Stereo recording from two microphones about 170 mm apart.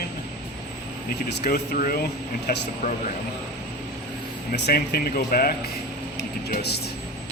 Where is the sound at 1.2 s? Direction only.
65° left (ahead or behind).